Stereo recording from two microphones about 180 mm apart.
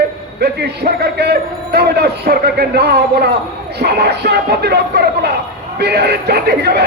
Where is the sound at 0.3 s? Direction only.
65° right (ahead or behind).